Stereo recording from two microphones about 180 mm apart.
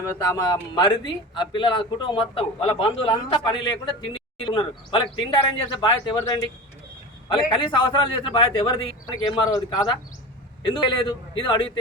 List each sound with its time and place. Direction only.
0.2 s speech: 20° left (ahead or behind)